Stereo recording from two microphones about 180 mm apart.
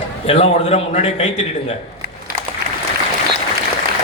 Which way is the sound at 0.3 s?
40° left (ahead or behind).